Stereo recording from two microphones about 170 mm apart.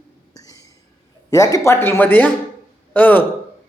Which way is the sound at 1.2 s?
20° left (ahead or behind).